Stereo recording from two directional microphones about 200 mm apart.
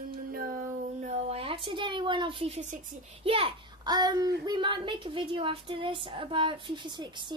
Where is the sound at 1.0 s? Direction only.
30° right (ahead or behind).